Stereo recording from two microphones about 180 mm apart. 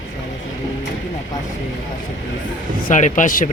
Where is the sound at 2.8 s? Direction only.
45° left (ahead or behind).